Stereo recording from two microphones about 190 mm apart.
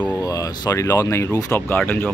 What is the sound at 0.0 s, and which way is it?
Speech, 15° left (ahead or behind).